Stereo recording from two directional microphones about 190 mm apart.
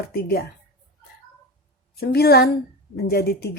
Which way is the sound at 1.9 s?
55° left (ahead or behind).